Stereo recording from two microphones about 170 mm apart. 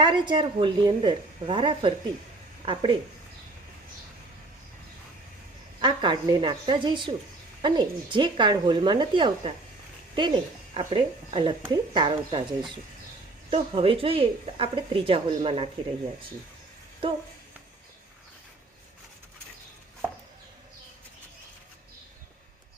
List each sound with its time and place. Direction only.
0.0 s a woman's voice: 30° right (ahead or behind)
5.8 s speech: 25° right (ahead or behind)
13.5 s a woman's voice: 30° right (ahead or behind)